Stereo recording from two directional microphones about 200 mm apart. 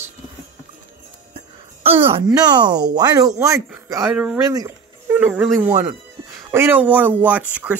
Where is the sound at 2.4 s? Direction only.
20° right (ahead or behind).